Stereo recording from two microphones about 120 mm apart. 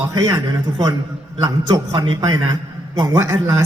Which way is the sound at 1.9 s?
40° right (ahead or behind).